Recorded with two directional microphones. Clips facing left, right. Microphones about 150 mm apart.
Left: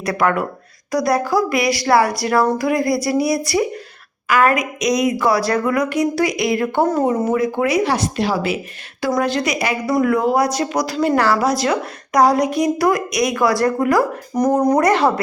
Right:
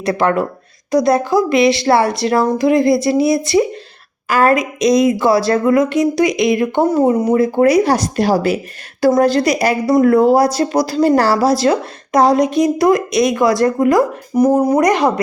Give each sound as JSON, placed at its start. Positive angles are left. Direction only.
{"t": 0.0, "sound": "speech", "side_deg": -25}
{"t": 7.3, "sound": "speech", "side_deg": -35}
{"t": 14.3, "sound": "speech", "side_deg": -10}